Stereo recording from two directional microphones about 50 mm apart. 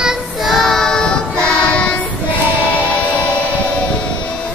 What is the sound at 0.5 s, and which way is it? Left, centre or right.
Music, centre.